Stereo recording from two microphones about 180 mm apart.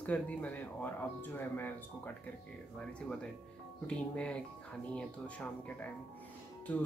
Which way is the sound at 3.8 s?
5° left (ahead or behind).